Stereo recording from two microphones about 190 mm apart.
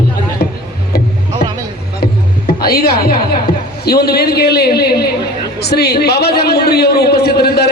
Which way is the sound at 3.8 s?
55° left (ahead or behind).